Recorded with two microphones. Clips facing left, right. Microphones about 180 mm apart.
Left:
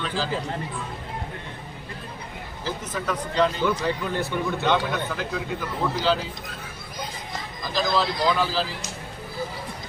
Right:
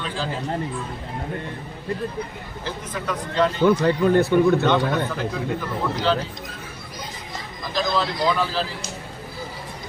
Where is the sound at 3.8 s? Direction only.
50° right (ahead or behind).